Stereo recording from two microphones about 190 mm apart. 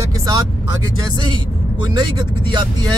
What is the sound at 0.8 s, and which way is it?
Speech, 25° right (ahead or behind).